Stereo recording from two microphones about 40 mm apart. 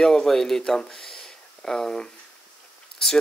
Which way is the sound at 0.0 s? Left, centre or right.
Centre.